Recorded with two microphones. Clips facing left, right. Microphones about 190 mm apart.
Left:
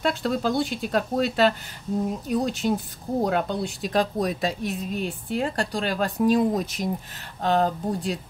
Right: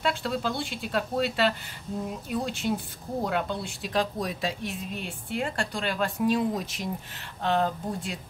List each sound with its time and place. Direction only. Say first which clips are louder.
0.0 s speech: left 4 dB; 45° left (ahead or behind)